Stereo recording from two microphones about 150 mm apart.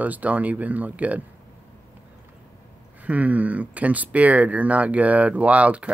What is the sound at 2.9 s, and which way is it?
Speech, 10° right (ahead or behind).